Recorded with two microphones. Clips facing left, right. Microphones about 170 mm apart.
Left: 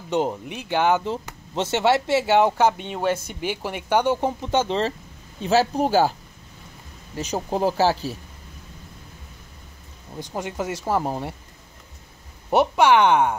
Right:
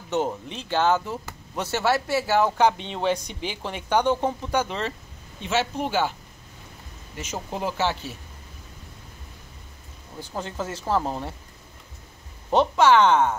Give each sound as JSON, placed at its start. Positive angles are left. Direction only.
{"t": 0.1, "sound": "speech", "side_deg": 15}
{"t": 2.5, "sound": "speech", "side_deg": 5}
{"t": 4.4, "sound": "speech", "side_deg": 25}
{"t": 7.2, "sound": "speech", "side_deg": 35}
{"t": 10.3, "sound": "speech", "side_deg": 15}
{"t": 12.4, "sound": "speech", "side_deg": 15}